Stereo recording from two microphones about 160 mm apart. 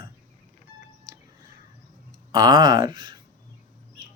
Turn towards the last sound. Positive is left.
turn(degrees=-30)  # may be behind; listen again after turning